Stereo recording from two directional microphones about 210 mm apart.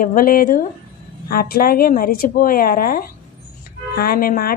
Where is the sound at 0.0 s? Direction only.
40° left (ahead or behind).